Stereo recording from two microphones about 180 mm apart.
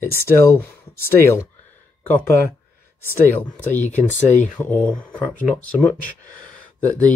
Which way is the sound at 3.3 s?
10° left (ahead or behind).